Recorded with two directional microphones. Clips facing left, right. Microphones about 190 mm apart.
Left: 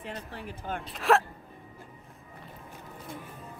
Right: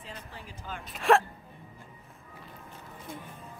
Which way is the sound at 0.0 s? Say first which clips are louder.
Left 6 dB; 60° left (ahead or behind).